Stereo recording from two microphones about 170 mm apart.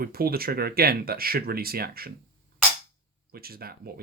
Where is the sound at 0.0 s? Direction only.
60° right (ahead or behind).